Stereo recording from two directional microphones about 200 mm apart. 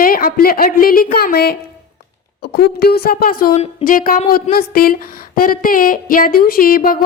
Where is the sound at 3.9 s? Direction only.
45° left (ahead or behind).